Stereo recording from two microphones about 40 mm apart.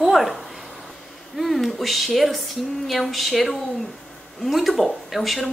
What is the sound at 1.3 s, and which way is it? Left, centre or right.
Speech, centre.